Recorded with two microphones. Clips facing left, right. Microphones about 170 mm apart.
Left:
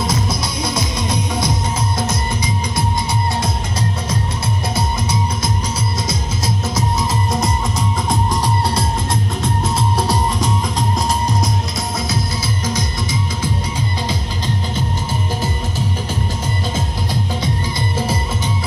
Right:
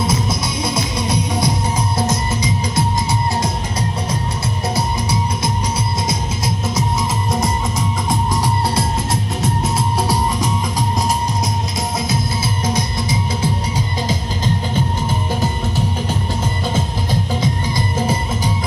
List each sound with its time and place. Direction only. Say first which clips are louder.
0.0 s music: right 1 dB; 25° right (ahead or behind)
6.0 s music: right 1 dB; 25° right (ahead or behind)
12.6 s music: right 2 dB; 30° right (ahead or behind)